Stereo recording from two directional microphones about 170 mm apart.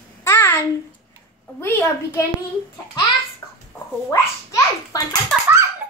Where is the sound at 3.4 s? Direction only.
10° left (ahead or behind).